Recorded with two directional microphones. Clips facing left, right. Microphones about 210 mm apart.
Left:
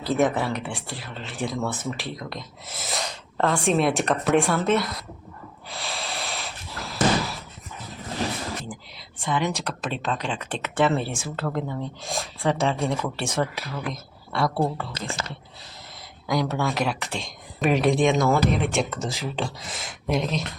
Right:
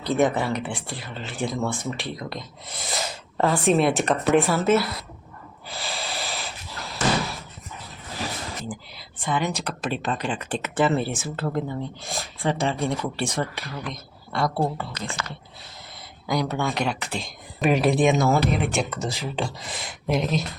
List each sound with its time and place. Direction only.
0.0 s speech: centre (ahead or behind)
5.6 s a sound: centre (ahead or behind)
8.6 s whispering: centre (ahead or behind)
9.2 s speech: centre (ahead or behind)
14.9 s speech: 30° left (ahead or behind)
16.2 s speech: centre (ahead or behind)